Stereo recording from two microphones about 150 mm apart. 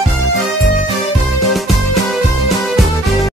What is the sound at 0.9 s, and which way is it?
Music, centre (ahead or behind).